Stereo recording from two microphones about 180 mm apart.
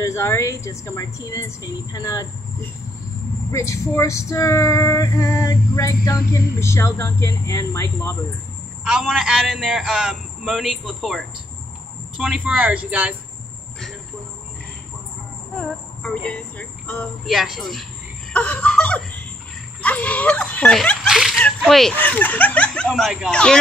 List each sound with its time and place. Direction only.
0.0 s a woman's voice: 15° left (ahead or behind)
8.8 s speech: 5° right (ahead or behind)
16.0 s speech: 5° left (ahead or behind)
18.3 s laughter: 5° left (ahead or behind)
19.8 s speech: 10° left (ahead or behind)